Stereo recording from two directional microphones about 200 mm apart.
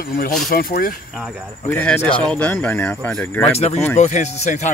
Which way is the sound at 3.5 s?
30° left (ahead or behind).